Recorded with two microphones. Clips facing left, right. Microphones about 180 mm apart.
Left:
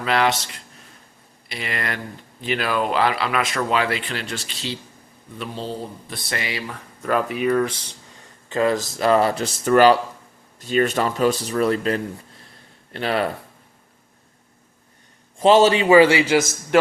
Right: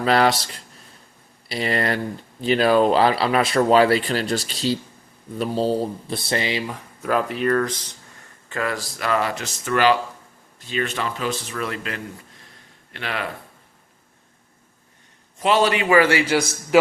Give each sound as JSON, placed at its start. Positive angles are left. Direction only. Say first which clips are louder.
{"t": 0.0, "sound": "speech", "louder": "right 3 dB", "side_deg": -35}
{"t": 7.1, "sound": "speech", "louder": "even", "side_deg": 0}
{"t": 8.4, "sound": "speech", "louder": "left 6 dB", "side_deg": 20}
{"t": 15.4, "sound": "a man's voice", "louder": "left 5 dB", "side_deg": 25}
{"t": 16.7, "sound": "speech", "louder": "right 1 dB", "side_deg": -5}